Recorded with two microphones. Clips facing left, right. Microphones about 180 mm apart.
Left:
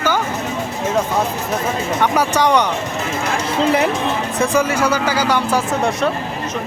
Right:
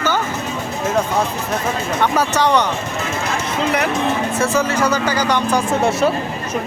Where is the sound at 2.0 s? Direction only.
10° left (ahead or behind).